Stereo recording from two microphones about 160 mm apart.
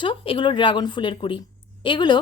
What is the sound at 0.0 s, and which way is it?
Speech, 30° left (ahead or behind).